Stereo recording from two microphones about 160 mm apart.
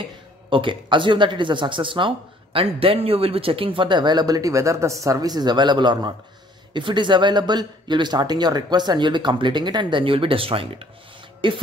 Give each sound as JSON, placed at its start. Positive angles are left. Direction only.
{"t": 0.5, "sound": "speech", "side_deg": -30}